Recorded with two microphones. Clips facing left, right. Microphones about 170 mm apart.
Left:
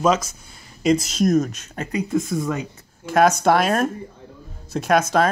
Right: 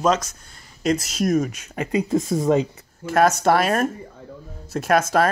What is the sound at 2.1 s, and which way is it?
Speech, 35° right (ahead or behind).